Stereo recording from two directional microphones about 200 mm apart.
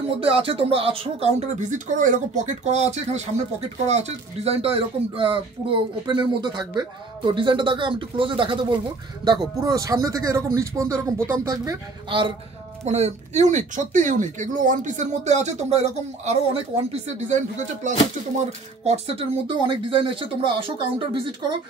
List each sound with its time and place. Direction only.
0.2 s speech: 30° right (ahead or behind)
12.8 s speech: 35° right (ahead or behind)
18.9 s speech: 30° right (ahead or behind)